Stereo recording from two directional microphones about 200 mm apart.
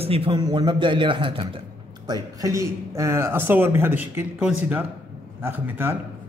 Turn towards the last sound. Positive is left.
turn(degrees=-10)  # may be behind; listen again after turning